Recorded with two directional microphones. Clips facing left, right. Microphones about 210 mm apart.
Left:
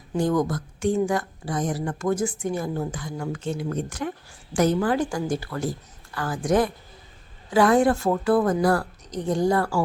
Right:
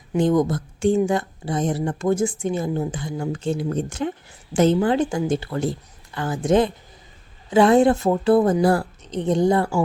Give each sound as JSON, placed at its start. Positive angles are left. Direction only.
{"t": 0.1, "sound": "speech", "side_deg": -20}